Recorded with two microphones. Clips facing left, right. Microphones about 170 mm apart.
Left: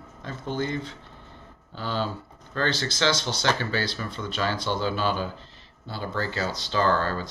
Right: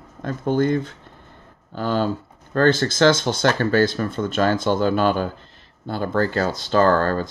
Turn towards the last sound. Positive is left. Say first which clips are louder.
# right 7 dB
turn(degrees=-50)  # may be behind; listen again after turning